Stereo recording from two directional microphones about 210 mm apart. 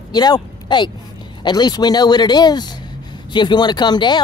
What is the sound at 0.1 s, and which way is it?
Speech, 20° left (ahead or behind).